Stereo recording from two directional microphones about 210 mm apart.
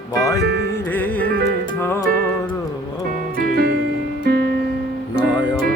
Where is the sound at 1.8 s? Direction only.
10° left (ahead or behind).